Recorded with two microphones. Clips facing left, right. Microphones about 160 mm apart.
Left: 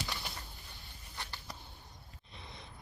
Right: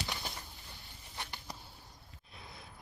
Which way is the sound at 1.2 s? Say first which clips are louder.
Right 1 dB; 15° right (ahead or behind).